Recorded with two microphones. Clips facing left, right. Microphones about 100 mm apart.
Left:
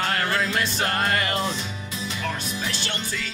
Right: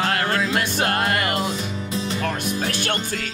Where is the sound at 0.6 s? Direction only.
55° right (ahead or behind).